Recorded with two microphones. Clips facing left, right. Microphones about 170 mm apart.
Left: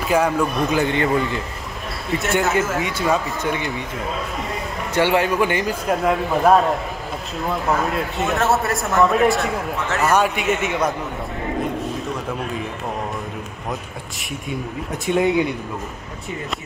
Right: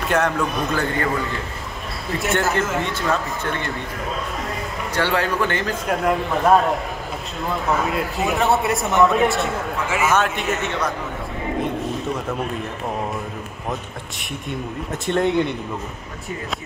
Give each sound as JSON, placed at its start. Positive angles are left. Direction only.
{"t": 0.0, "sound": "speech", "side_deg": 5}
{"t": 0.7, "sound": "a man's voice", "side_deg": 20}
{"t": 2.1, "sound": "speech", "side_deg": 0}
{"t": 4.9, "sound": "a man's voice", "side_deg": 15}
{"t": 5.9, "sound": "speech", "side_deg": 0}
{"t": 14.5, "sound": "speech", "side_deg": 5}